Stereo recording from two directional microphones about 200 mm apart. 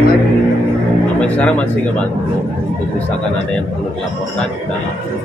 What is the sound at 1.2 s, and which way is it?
Speech, 5° left (ahead or behind).